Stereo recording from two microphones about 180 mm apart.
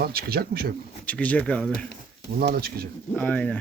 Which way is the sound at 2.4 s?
60° right (ahead or behind).